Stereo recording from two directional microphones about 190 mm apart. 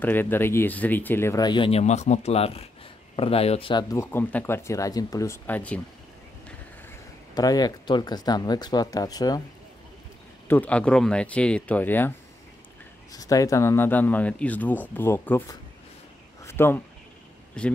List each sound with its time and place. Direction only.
0.0 s speech: 10° left (ahead or behind); by 3.8 s 30° left (ahead or behind)
3.9 s speech: 10° left (ahead or behind)
6.9 s speech: 20° left (ahead or behind)
10.5 s speech: 5° left (ahead or behind)
13.1 s speech: 20° left (ahead or behind)